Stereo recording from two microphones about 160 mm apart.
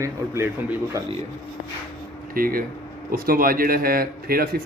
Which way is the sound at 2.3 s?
65° right (ahead or behind).